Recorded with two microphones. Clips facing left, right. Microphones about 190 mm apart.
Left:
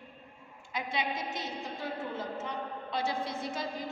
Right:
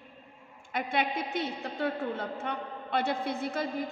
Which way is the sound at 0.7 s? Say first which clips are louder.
Right 4 dB; 60° right (ahead or behind).